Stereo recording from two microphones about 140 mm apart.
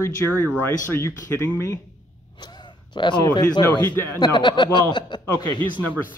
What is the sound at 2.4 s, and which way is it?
Speech, 30° left (ahead or behind).